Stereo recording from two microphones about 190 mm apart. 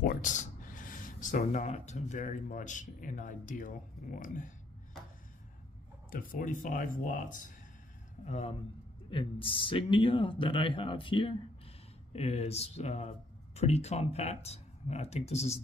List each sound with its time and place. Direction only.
0.0 s speech: 45° left (ahead or behind)
6.1 s speech: 45° left (ahead or behind)